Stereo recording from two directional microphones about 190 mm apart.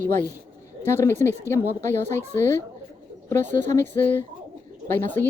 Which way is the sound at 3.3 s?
40° right (ahead or behind).